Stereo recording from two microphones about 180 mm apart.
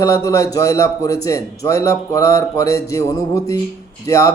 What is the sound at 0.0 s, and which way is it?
A man's voice, 15° left (ahead or behind).